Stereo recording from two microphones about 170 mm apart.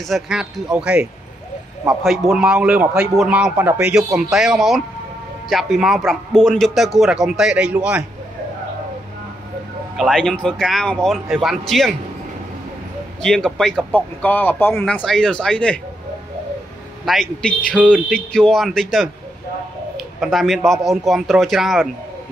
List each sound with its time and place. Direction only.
0.1 s a man's voice: 5° right (ahead or behind)
9.9 s a man's voice: 5° left (ahead or behind)
13.2 s a man's voice: 5° left (ahead or behind)
17.0 s a man's voice: centre (ahead or behind)
20.2 s a man's voice: centre (ahead or behind)